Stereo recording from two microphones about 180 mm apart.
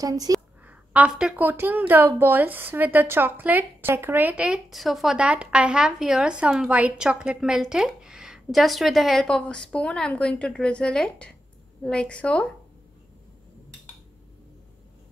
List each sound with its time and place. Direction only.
0.0 s a woman's voice: 20° right (ahead or behind)
0.7 s a woman's voice: 10° right (ahead or behind)